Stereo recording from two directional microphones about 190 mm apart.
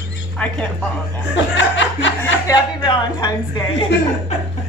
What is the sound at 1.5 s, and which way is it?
Speech, 75° left (ahead or behind).